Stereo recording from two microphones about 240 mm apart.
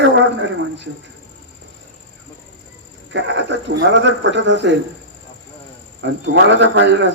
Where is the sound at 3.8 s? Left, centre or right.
Right.